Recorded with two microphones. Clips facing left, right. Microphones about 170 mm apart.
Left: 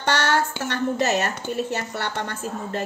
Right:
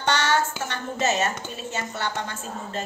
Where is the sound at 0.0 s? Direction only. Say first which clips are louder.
Left 1 dB; 60° left (ahead or behind).